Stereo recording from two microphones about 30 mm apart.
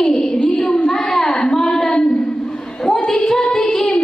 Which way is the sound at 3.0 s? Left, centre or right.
Centre.